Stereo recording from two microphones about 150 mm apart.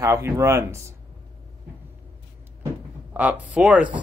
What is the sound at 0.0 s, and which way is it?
Speech, 20° right (ahead or behind).